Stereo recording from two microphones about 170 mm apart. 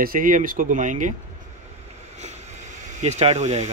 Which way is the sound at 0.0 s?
50° right (ahead or behind).